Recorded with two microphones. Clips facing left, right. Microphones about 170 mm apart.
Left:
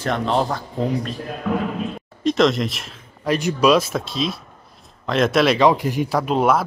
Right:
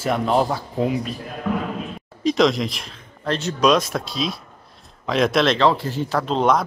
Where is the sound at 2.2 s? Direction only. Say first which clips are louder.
Left 1 dB; centre (ahead or behind).